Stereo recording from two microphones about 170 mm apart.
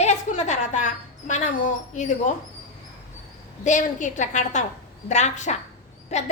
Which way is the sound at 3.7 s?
45° left (ahead or behind).